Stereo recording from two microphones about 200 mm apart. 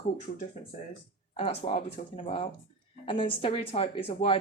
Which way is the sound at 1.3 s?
30° left (ahead or behind).